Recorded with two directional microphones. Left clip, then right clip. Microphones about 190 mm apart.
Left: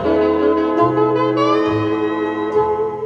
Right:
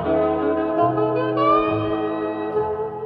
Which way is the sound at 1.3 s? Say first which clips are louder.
Left 2 dB; 40° left (ahead or behind).